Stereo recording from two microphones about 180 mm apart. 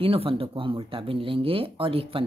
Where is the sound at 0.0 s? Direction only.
30° right (ahead or behind).